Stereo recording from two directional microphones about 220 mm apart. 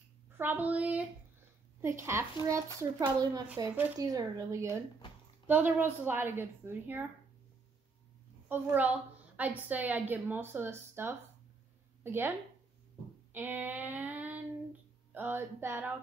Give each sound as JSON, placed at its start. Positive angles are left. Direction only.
{"t": 0.4, "sound": "speech", "side_deg": -10}
{"t": 8.5, "sound": "speech", "side_deg": -5}
{"t": 13.3, "sound": "female singing", "side_deg": -10}
{"t": 15.1, "sound": "speech", "side_deg": -10}